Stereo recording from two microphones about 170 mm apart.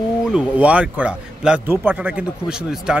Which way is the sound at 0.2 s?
5° right (ahead or behind).